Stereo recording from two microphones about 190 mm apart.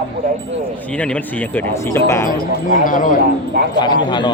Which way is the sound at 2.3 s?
45° left (ahead or behind).